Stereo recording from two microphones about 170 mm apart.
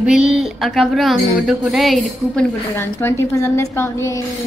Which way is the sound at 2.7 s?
15° left (ahead or behind).